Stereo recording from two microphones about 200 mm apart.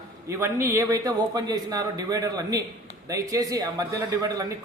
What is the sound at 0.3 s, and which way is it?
A man's voice, 15° right (ahead or behind).